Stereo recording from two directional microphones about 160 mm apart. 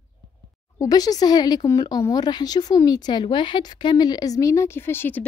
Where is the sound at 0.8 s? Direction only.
25° left (ahead or behind).